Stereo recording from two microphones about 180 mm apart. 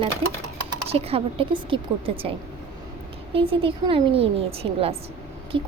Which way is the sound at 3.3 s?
30° right (ahead or behind).